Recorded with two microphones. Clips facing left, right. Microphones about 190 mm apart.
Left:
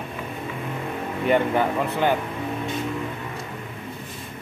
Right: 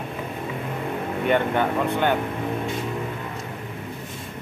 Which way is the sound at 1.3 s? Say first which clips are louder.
Left 1 dB; 5° left (ahead or behind).